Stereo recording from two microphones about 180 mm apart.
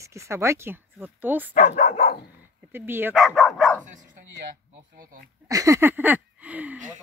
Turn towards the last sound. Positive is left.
turn(degrees=-10)  # may be behind; listen again after turning